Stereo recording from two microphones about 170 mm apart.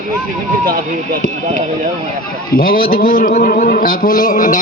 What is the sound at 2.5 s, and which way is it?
A man's voice, 55° left (ahead or behind).